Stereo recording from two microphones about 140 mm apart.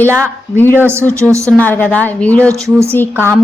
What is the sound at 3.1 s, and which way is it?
Speech, 15° right (ahead or behind).